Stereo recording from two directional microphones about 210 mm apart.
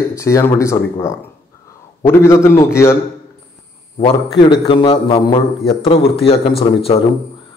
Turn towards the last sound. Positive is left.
turn(degrees=25)  # may be behind; listen again after turning